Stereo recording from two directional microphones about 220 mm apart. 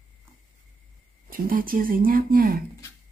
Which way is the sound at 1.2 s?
40° right (ahead or behind).